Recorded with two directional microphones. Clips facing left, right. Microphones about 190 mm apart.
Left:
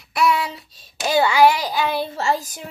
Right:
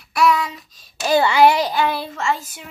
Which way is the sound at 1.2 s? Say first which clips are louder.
Even; 15° left (ahead or behind).